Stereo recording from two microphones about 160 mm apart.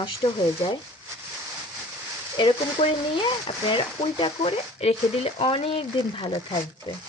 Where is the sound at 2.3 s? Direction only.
35° left (ahead or behind).